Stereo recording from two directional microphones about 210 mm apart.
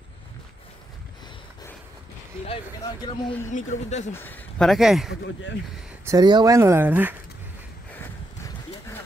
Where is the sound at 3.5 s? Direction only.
35° left (ahead or behind).